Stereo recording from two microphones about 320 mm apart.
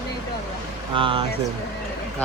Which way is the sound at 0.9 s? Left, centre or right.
Centre.